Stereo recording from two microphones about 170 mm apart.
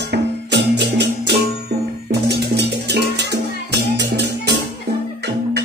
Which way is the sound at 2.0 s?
80° right.